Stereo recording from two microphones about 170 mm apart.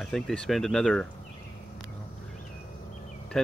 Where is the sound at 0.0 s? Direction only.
5° left (ahead or behind).